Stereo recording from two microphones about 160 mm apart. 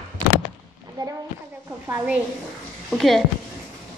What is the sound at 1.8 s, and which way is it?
Speech, 15° right (ahead or behind).